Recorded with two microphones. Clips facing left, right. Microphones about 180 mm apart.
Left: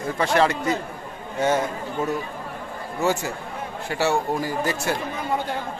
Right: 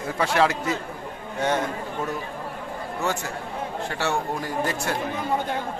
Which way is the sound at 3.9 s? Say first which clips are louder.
Left 6 dB; 5° left (ahead or behind).